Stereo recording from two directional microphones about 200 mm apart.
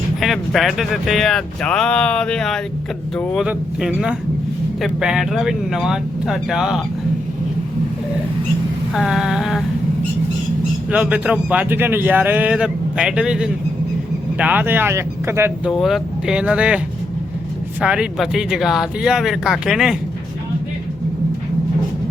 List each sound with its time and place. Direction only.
0.2 s speech: centre (ahead or behind)
9.0 s speech: centre (ahead or behind)
10.9 s speech: 5° right (ahead or behind)
15.7 s speech: centre (ahead or behind)